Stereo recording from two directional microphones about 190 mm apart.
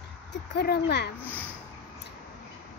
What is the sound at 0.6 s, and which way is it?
Speech, 60° left (ahead or behind).